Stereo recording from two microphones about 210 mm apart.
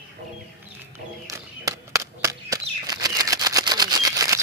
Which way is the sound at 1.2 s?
15° right (ahead or behind).